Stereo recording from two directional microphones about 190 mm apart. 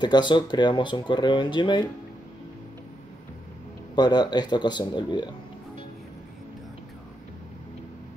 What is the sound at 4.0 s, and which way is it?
Speech, 20° left (ahead or behind).